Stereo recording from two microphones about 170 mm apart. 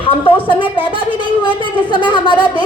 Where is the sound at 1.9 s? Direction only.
30° left (ahead or behind).